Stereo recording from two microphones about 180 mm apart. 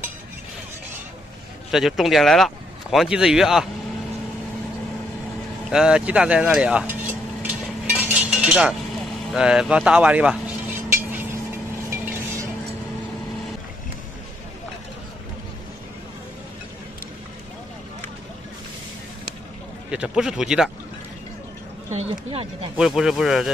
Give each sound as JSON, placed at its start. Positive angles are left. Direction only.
{"t": 1.7, "sound": "speech", "side_deg": 0}
{"t": 5.7, "sound": "speech", "side_deg": -5}
{"t": 7.4, "sound": "a sound", "side_deg": -10}
{"t": 9.3, "sound": "speech", "side_deg": -5}
{"t": 11.9, "sound": "a sound", "side_deg": -10}
{"t": 19.9, "sound": "speech", "side_deg": -5}
{"t": 21.9, "sound": "speech", "side_deg": -30}
{"t": 22.8, "sound": "speech", "side_deg": -5}